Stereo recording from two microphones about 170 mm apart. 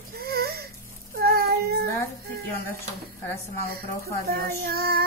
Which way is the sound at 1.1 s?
65° right (ahead or behind).